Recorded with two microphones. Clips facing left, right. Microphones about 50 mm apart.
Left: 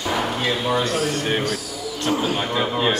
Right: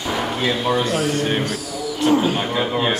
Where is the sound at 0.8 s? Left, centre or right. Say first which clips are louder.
Right 2 dB; right.